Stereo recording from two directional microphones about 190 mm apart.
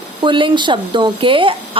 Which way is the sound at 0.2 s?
25° right (ahead or behind).